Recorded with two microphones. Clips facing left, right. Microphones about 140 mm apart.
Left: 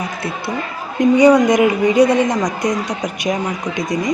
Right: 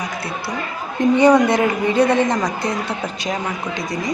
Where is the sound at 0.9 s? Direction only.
10° left (ahead or behind).